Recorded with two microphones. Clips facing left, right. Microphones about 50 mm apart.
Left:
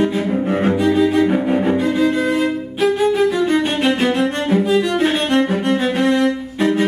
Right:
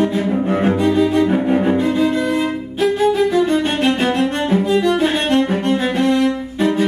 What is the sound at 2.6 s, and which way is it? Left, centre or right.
Music, centre.